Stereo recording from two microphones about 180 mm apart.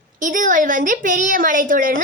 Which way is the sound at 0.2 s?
45° right (ahead or behind).